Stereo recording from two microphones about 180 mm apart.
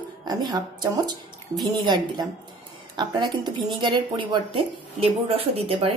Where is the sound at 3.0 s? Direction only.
25° right (ahead or behind).